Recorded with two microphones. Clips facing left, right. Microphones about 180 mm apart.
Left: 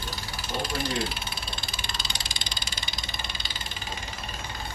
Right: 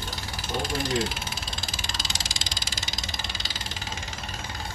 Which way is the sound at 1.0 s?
90° right.